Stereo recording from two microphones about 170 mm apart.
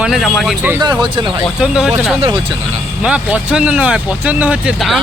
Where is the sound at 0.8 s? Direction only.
25° right (ahead or behind).